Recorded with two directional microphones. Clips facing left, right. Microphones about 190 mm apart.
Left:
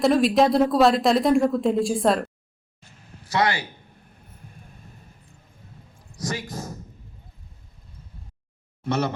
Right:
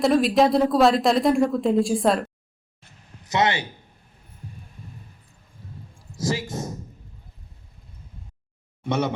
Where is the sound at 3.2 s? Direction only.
20° right (ahead or behind).